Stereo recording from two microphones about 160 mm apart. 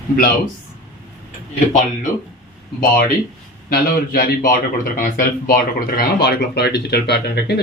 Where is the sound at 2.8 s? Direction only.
60° left (ahead or behind); by 7.6 s 90° left.